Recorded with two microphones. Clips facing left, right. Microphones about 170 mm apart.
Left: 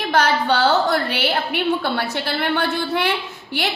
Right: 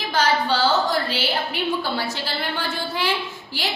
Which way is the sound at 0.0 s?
65° left (ahead or behind).